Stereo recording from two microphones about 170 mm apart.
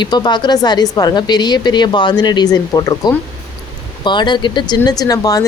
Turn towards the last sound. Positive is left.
turn(degrees=20)  # may be behind; listen again after turning